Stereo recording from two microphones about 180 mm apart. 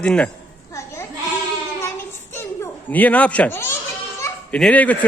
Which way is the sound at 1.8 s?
15° left (ahead or behind).